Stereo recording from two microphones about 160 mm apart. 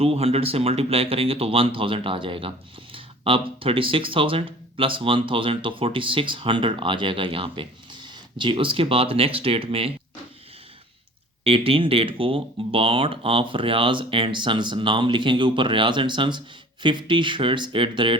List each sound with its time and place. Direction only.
0.0 s speech: 35° right (ahead or behind)
11.4 s speech: 35° right (ahead or behind)